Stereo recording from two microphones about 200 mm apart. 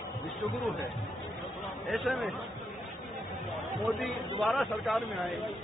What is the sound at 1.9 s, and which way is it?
Speech, centre (ahead or behind).